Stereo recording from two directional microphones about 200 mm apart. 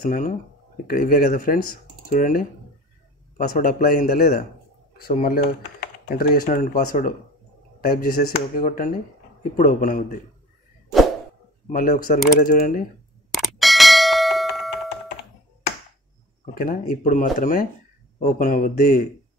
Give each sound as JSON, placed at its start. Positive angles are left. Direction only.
{"t": 0.0, "sound": "speech", "side_deg": 40}
{"t": 11.7, "sound": "speech", "side_deg": 45}
{"t": 13.3, "sound": "ding", "side_deg": 0}
{"t": 16.5, "sound": "speech", "side_deg": 45}